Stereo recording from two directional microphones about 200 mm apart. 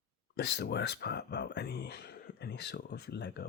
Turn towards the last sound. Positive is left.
turn(degrees=55)  # may be behind; listen again after turning